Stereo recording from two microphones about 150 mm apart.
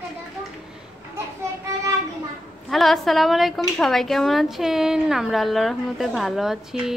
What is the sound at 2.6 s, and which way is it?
A woman's voice, centre (ahead or behind).